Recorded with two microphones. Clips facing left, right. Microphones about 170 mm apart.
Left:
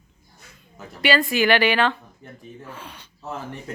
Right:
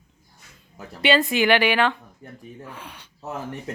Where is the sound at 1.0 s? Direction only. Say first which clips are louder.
Even; 20° right (ahead or behind).